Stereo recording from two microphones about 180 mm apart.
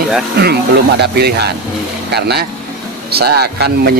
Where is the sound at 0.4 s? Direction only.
65° right (ahead or behind).